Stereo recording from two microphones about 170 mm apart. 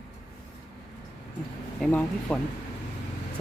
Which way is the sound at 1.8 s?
10° left (ahead or behind).